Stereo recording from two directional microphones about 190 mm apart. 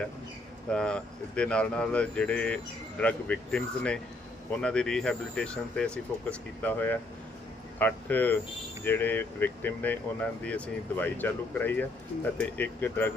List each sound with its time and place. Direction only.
0.7 s speech: 5° left (ahead or behind)